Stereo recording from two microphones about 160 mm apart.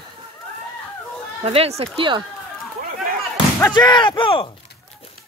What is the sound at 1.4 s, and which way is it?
Speech, 40° right (ahead or behind).